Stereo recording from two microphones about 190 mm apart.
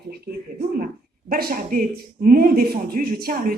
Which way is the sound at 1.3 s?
50° right (ahead or behind).